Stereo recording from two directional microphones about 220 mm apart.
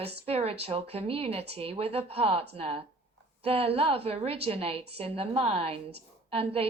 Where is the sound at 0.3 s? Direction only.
25° right (ahead or behind).